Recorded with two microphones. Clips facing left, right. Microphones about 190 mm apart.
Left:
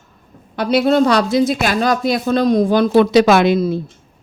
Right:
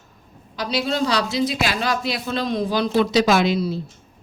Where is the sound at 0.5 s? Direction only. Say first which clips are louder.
Left 10 dB; 60° left (ahead or behind).